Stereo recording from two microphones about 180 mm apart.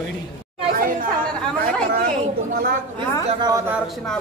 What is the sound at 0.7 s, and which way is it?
Chatter, 50° right (ahead or behind).